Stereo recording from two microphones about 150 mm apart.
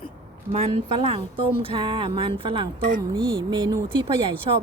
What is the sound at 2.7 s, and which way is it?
Speech, 65° right (ahead or behind).